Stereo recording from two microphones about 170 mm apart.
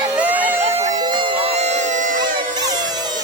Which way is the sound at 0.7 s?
40° right (ahead or behind).